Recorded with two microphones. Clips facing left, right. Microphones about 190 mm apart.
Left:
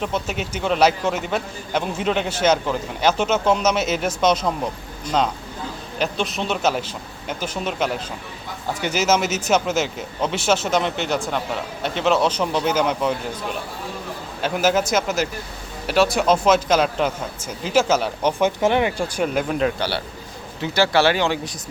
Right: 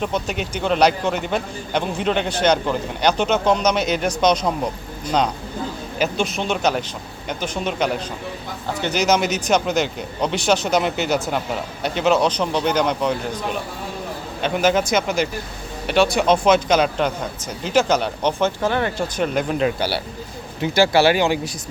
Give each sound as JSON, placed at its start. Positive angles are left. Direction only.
{"t": 0.0, "sound": "a man's voice", "side_deg": 5}
{"t": 6.0, "sound": "a man's voice", "side_deg": 0}
{"t": 14.4, "sound": "a man's voice", "side_deg": 5}
{"t": 20.6, "sound": "speech", "side_deg": -15}